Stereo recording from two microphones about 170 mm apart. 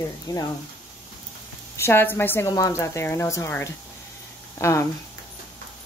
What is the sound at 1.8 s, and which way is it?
A woman's voice, 15° left (ahead or behind).